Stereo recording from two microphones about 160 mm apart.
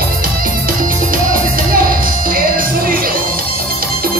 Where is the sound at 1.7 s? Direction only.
65° right (ahead or behind).